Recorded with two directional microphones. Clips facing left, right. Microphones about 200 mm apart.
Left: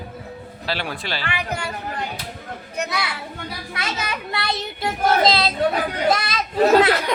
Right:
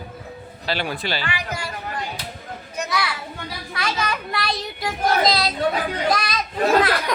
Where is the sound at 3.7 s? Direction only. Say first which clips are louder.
Right 3 dB; 25° left (ahead or behind).